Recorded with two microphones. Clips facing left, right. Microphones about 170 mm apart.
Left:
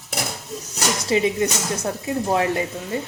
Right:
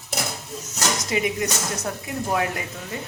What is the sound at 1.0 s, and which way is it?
Speech, 30° left (ahead or behind).